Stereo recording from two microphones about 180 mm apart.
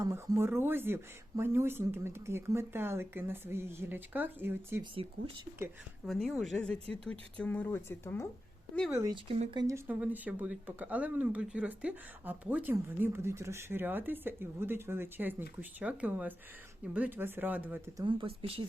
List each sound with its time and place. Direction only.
0.0 s speech: 15° right (ahead or behind)
4.8 s speech: 30° right (ahead or behind)
6.1 s speech: centre (ahead or behind)
9.3 s speech: 30° right (ahead or behind)
9.6 s speech: 15° right (ahead or behind)
18.0 s speech: 30° right (ahead or behind)